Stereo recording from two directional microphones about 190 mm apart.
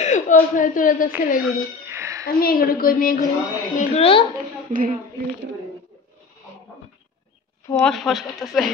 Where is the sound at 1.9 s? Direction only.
15° right (ahead or behind).